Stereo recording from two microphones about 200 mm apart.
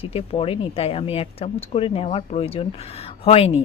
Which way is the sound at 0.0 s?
30° left (ahead or behind).